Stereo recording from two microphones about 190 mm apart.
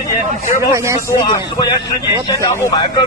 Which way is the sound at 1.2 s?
20° left (ahead or behind).